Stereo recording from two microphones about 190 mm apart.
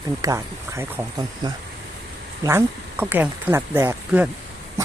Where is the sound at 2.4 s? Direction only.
10° right (ahead or behind).